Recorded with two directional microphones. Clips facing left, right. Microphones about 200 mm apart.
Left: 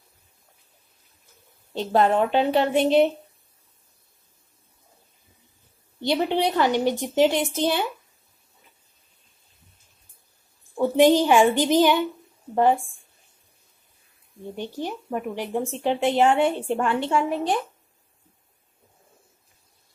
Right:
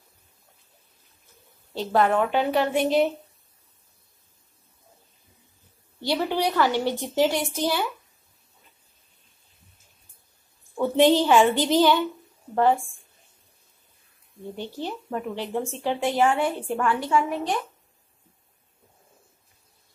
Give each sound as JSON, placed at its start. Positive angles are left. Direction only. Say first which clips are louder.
{"t": 1.7, "sound": "speech", "louder": "left 1 dB", "side_deg": 25}
{"t": 5.9, "sound": "speech", "louder": "left 2 dB", "side_deg": 20}
{"t": 10.8, "sound": "a woman's voice", "louder": "left 2 dB", "side_deg": 15}
{"t": 14.6, "sound": "speech", "louder": "left 2 dB", "side_deg": 15}